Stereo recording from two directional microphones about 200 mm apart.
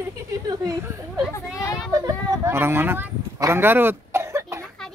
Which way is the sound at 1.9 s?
15° right (ahead or behind).